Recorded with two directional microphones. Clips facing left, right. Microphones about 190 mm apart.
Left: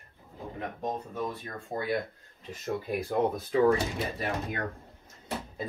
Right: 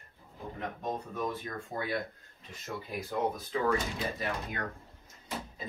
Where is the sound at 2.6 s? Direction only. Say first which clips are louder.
Left 7 dB; 55° left (ahead or behind).